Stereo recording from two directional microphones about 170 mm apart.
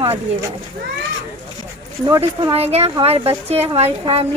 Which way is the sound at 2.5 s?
35° right (ahead or behind).